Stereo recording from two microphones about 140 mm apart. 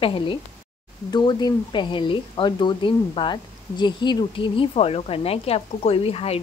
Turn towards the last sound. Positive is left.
turn(degrees=45)  # may be behind; listen again after turning